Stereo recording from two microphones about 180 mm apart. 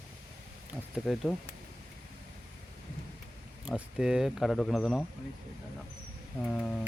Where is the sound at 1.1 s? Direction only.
Centre (ahead or behind).